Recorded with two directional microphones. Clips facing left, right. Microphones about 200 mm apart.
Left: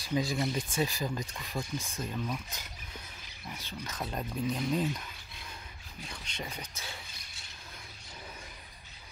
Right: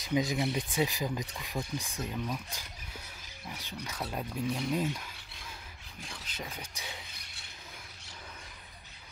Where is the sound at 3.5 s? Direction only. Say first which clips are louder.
Even; 15° right (ahead or behind).